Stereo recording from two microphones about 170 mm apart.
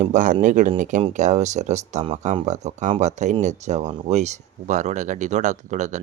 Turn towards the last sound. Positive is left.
turn(degrees=-45)  # may be behind; listen again after turning